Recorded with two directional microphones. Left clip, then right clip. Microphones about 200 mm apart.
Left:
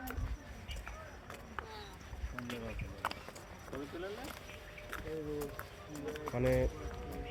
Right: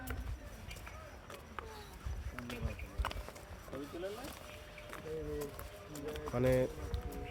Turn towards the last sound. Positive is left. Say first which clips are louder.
# right 1 dB
turn(degrees=-15)  # may be behind; listen again after turning